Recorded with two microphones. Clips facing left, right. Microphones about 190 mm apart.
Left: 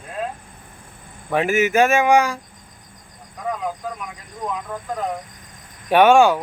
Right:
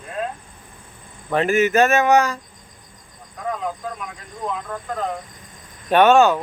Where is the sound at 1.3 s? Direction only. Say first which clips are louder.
Right 1 dB; 10° left (ahead or behind).